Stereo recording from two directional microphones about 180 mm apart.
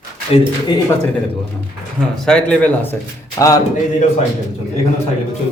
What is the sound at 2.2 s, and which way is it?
Speech, 5° left (ahead or behind).